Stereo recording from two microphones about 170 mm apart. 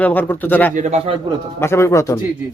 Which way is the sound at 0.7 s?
45° right (ahead or behind).